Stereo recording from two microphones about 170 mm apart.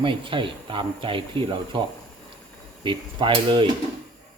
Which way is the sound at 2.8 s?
30° right (ahead or behind).